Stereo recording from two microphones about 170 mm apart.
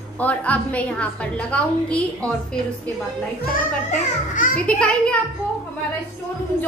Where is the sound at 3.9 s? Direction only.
50° left (ahead or behind).